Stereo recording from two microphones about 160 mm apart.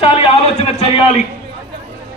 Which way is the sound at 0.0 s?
35° left (ahead or behind).